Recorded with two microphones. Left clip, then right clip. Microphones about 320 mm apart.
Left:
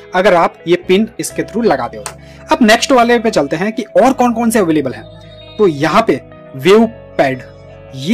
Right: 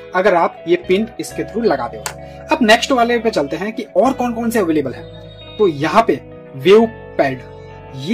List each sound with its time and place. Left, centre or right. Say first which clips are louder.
0.1 s speech: left 4 dB; centre